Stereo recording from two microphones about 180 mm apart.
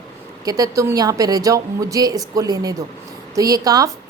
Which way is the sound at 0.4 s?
20° right (ahead or behind).